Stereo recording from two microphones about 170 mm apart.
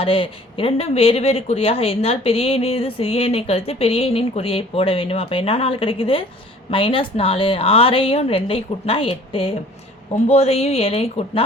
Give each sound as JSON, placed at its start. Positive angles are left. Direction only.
{"t": 0.0, "sound": "speech", "side_deg": 35}